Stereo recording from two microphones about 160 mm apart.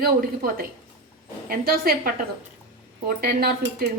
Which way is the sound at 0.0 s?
65° right (ahead or behind).